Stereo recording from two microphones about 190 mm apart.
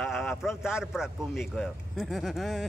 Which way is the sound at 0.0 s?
Centre (ahead or behind).